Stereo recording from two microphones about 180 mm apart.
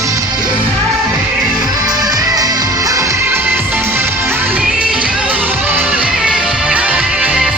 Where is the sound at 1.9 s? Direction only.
20° right (ahead or behind).